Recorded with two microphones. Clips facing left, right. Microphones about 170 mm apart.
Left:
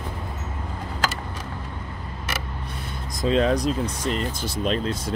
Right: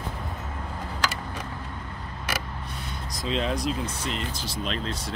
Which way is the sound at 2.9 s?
50° left (ahead or behind).